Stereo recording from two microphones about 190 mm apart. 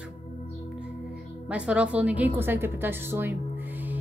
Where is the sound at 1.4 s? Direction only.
5° right (ahead or behind).